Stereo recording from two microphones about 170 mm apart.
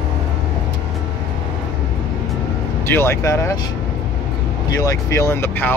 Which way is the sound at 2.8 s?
15° left (ahead or behind).